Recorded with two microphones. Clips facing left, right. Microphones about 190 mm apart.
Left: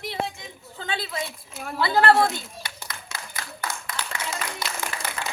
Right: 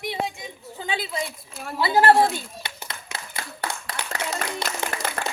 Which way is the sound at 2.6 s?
25° right (ahead or behind).